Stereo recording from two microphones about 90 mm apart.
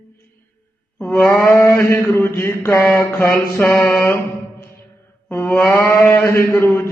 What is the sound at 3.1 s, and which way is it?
Mantra, 15° left (ahead or behind).